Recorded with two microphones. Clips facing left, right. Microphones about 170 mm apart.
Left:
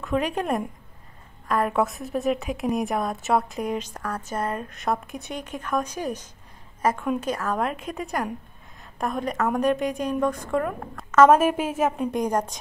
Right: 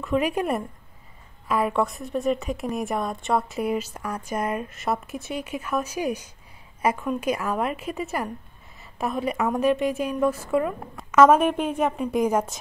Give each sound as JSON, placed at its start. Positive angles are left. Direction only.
{"t": 0.0, "sound": "a woman's voice", "side_deg": -5}